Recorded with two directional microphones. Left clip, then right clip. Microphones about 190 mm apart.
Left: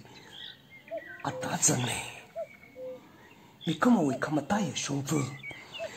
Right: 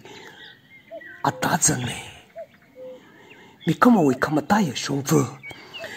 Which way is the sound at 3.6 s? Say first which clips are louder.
Right 9 dB; 30° right (ahead or behind).